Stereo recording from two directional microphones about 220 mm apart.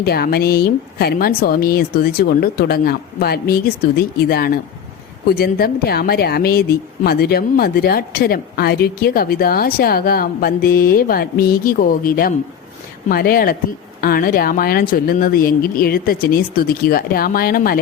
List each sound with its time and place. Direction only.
0.0 s a woman's voice: 45° left (ahead or behind)